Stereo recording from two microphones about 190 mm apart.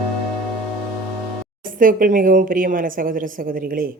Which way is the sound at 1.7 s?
45° right (ahead or behind).